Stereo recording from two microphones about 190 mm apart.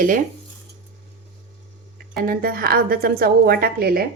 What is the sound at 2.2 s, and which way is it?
A woman's voice, 50° right (ahead or behind).